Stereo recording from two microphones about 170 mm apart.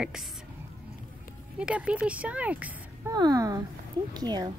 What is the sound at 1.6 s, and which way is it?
Speech, 5° right (ahead or behind).